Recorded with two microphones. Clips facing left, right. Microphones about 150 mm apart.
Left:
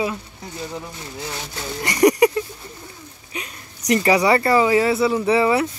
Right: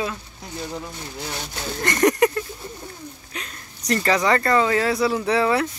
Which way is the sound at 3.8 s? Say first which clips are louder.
Left 3 dB; 15° left (ahead or behind).